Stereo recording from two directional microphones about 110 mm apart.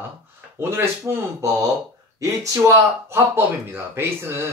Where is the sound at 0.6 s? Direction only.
20° right (ahead or behind).